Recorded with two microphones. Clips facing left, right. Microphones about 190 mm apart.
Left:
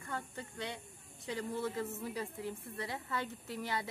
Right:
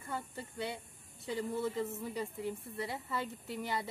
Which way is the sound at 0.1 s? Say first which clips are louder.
Right 1 dB; 5° right (ahead or behind).